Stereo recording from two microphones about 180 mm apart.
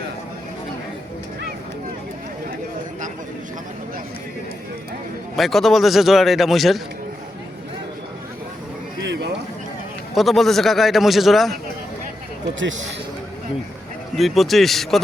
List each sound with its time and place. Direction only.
5.4 s a man's voice: centre (ahead or behind)
9.0 s a sound: 75° right (ahead or behind)
10.2 s a man's voice: centre (ahead or behind)
12.5 s a man's voice: 90° right
14.2 s a man's voice: centre (ahead or behind)